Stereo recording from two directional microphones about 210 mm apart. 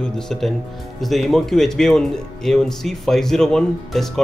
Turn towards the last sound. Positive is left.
turn(degrees=0)  # may be behind; listen again after turning